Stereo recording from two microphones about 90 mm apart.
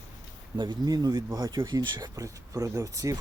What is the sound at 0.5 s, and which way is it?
Speech, 55° right (ahead or behind).